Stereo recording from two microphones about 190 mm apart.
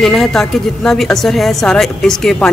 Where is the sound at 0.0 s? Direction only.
Centre (ahead or behind).